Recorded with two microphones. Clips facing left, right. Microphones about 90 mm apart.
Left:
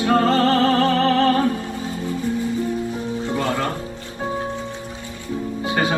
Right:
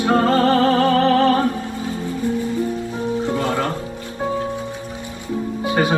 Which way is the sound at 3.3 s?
20° right (ahead or behind).